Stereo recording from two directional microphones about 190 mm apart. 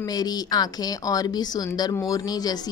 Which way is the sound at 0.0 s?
20° left (ahead or behind).